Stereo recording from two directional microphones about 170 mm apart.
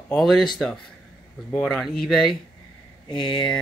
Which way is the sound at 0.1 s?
Centre (ahead or behind).